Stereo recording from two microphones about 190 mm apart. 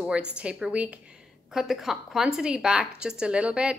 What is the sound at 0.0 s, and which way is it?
A woman's voice, 5° right (ahead or behind).